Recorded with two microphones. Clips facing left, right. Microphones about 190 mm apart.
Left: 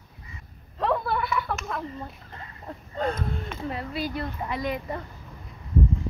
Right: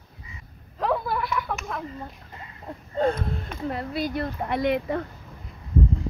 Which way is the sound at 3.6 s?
55° right (ahead or behind).